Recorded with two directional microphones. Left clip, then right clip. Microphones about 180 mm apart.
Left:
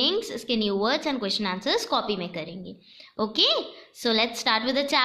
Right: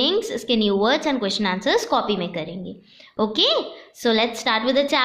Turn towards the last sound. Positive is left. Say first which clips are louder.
# right 4 dB
turn(degrees=10)  # may be behind; listen again after turning